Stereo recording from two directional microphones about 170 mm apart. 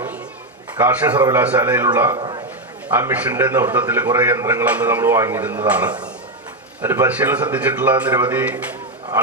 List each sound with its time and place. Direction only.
0.8 s a man's voice: 10° right (ahead or behind)
2.1 s a man's voice: 25° right (ahead or behind)
2.9 s a man's voice: 10° right (ahead or behind)